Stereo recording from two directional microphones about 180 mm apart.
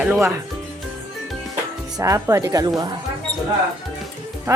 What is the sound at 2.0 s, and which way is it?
Speech, 15° right (ahead or behind).